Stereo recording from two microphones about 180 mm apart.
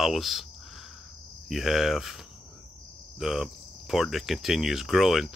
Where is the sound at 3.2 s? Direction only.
Centre (ahead or behind).